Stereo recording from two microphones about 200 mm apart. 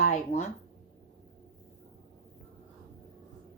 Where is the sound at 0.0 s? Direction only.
35° left (ahead or behind).